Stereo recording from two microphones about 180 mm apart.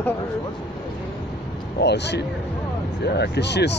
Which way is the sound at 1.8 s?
70° left (ahead or behind).